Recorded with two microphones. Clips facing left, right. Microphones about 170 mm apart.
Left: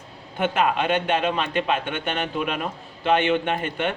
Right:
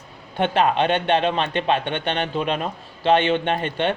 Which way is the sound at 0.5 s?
30° right (ahead or behind).